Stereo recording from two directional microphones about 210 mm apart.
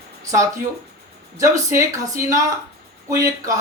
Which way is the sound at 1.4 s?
15° right (ahead or behind).